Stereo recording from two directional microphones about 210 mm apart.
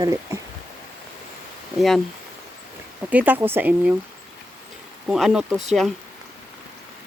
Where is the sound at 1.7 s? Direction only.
Centre (ahead or behind).